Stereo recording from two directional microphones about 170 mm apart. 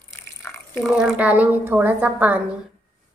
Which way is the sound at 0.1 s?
15° left (ahead or behind).